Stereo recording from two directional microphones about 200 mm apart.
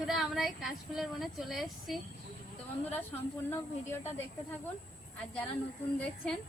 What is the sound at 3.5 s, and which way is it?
Speech, 10° left (ahead or behind).